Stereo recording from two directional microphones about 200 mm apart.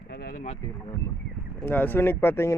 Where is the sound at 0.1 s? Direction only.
55° left (ahead or behind).